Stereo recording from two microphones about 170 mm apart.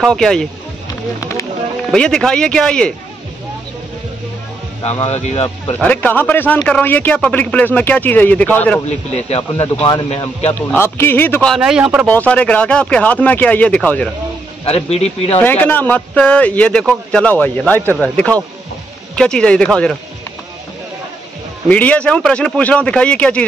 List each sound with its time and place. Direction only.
0.0 s speech: 5° left (ahead or behind)
1.9 s speech: 5° left (ahead or behind)
4.8 s speech: 40° left (ahead or behind)
5.8 s speech: 10° left (ahead or behind)
8.8 s speech: 40° left (ahead or behind)
10.5 s speech: 15° left (ahead or behind)
11.5 s speech: 5° right (ahead or behind)
12.1 s speech: 10° left (ahead or behind)
14.6 s speech: 35° left (ahead or behind)
15.3 s speech: 10° left (ahead or behind)
21.6 s speech: 10° left (ahead or behind)